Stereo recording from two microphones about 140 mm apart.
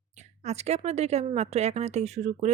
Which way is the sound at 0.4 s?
50° right (ahead or behind).